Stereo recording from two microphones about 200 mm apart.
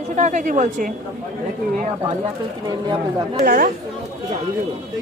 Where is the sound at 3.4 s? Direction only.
50° right (ahead or behind).